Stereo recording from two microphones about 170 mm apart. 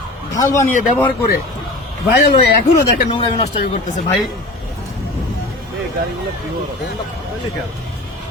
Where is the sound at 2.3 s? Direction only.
45° left (ahead or behind).